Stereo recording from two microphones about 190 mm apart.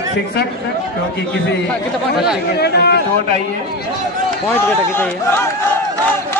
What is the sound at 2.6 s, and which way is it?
Speech, 60° left (ahead or behind).